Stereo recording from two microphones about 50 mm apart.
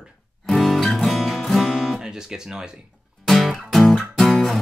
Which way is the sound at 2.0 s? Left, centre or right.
Centre.